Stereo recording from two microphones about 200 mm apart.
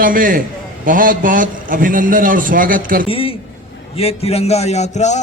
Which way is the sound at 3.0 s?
30° left (ahead or behind).